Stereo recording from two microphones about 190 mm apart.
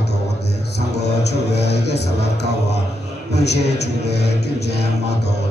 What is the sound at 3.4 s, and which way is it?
Speech, 60° left (ahead or behind).